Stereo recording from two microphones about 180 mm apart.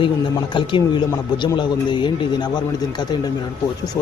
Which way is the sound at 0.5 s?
25° left (ahead or behind).